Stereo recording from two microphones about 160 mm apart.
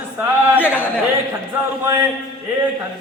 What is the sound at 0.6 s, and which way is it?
Speech, 10° right (ahead or behind).